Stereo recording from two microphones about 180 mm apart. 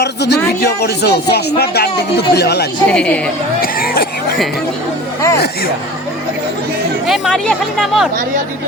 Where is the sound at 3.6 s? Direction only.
55° left (ahead or behind).